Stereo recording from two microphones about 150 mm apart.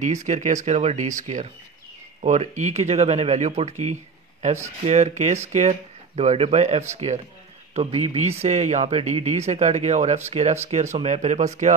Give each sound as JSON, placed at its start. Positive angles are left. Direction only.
{"t": 0.0, "sound": "speech", "side_deg": -55}